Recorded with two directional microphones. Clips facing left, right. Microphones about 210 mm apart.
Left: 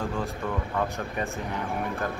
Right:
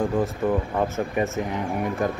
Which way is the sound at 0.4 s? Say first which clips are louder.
Right 10 dB; 20° right (ahead or behind).